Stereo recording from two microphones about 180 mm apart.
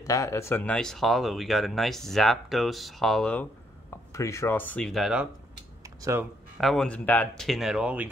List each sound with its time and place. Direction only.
0.0 s speech: 15° left (ahead or behind)
4.1 s speech: 15° left (ahead or behind); by 5.3 s 5° right (ahead or behind)
6.6 s speech: centre (ahead or behind)